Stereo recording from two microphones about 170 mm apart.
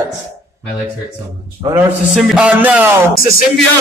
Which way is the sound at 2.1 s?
5° right (ahead or behind).